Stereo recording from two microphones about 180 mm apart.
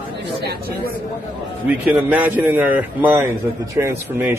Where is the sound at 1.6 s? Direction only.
5° right (ahead or behind).